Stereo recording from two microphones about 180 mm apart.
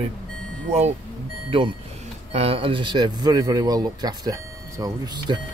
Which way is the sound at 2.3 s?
35° right (ahead or behind).